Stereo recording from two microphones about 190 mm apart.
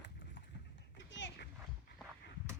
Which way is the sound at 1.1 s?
70° left (ahead or behind).